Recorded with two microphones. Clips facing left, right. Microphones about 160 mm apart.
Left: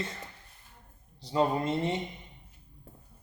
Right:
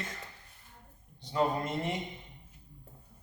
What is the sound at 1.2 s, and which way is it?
Speech, 30° left (ahead or behind).